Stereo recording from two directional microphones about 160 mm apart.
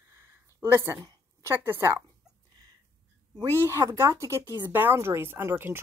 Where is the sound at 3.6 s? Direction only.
20° right (ahead or behind).